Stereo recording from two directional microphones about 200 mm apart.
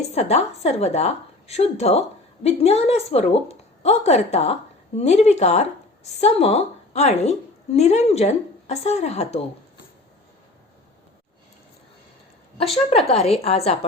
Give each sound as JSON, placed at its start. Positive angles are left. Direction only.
{"t": 0.1, "sound": "a woman's voice", "side_deg": 35}
{"t": 13.1, "sound": "a woman's voice", "side_deg": 30}